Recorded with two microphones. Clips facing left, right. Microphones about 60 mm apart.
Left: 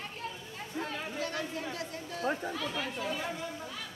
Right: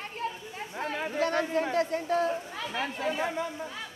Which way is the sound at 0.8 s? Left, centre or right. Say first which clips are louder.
Right 4 dB; right.